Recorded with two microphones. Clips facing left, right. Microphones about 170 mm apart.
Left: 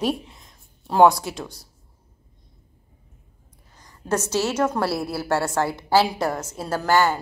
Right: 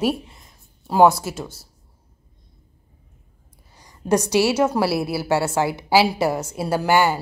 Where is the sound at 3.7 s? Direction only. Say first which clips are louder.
Right 5 dB; 10° right (ahead or behind).